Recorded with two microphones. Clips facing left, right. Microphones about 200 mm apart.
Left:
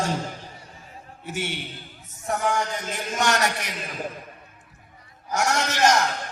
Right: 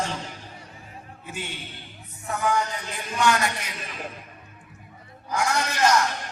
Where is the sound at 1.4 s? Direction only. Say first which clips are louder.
Left 6 dB; 75° left (ahead or behind).